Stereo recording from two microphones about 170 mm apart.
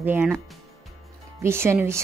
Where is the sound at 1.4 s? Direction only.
15° right (ahead or behind).